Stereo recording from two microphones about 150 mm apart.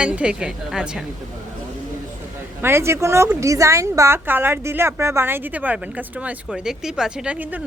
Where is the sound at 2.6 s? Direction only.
15° right (ahead or behind).